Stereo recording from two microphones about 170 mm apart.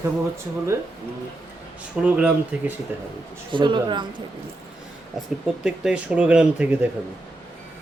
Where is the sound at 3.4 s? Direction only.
30° right (ahead or behind).